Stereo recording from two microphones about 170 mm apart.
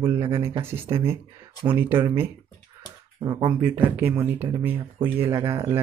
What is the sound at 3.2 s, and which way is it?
Speech, 25° right (ahead or behind).